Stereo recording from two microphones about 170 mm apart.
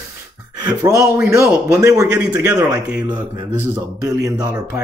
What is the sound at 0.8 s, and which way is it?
Speech, 20° right (ahead or behind).